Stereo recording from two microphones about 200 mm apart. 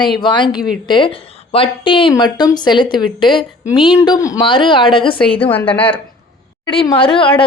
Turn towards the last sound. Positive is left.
turn(degrees=25)  # may be behind; listen again after turning